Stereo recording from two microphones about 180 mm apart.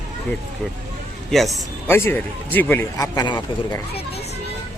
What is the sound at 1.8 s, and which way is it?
A man's voice, 10° left (ahead or behind).